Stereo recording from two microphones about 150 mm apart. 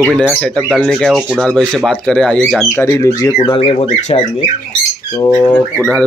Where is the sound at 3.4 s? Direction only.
35° left (ahead or behind).